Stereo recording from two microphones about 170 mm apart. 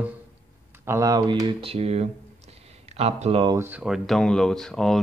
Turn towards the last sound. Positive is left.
turn(degrees=5)  # may be behind; listen again after turning